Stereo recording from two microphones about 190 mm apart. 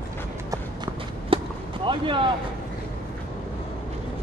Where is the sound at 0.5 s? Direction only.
20° right (ahead or behind).